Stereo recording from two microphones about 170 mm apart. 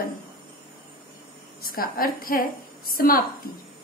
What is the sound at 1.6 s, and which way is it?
A woman's voice, 60° left (ahead or behind).